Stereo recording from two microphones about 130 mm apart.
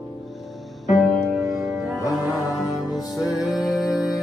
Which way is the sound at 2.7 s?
30° left (ahead or behind).